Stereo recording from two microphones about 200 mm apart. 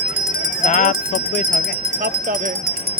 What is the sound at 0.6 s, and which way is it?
Speech, 40° left (ahead or behind).